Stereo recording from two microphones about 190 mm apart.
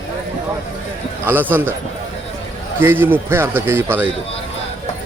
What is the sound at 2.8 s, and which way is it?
A man's voice, 10° right (ahead or behind).